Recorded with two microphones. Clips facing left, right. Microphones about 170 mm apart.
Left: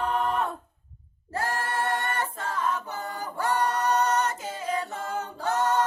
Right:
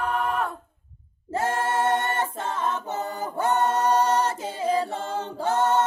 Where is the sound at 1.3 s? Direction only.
25° right (ahead or behind).